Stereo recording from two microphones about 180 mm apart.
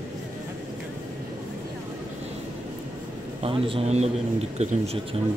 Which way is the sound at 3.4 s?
30° right (ahead or behind).